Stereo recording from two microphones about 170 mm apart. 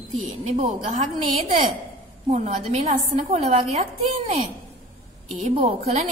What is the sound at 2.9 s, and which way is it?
Speech, 50° right (ahead or behind).